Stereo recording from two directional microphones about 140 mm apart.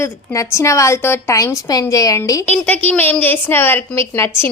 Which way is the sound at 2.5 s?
10° left (ahead or behind).